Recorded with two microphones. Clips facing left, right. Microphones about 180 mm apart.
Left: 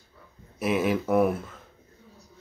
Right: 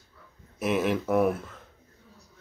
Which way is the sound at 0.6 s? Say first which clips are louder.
Left 1 dB; centre (ahead or behind).